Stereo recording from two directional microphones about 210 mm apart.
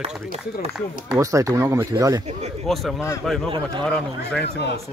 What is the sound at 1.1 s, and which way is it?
Speech, 15° right (ahead or behind).